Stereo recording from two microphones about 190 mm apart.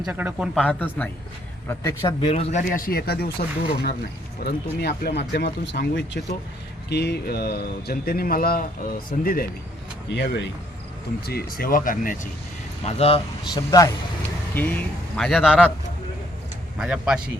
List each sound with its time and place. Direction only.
0.0 s a man's voice: 10° right (ahead or behind); by 2.3 s 15° left (ahead or behind)
2.3 s speech: 35° left (ahead or behind)
10.1 s speech: 65° left (ahead or behind)
11.3 s speech: 50° left (ahead or behind)
12.8 s speech: 30° left (ahead or behind)
13.6 s a man's voice: 15° left (ahead or behind); by 15.7 s centre (ahead or behind)
16.7 s speech: 5° right (ahead or behind)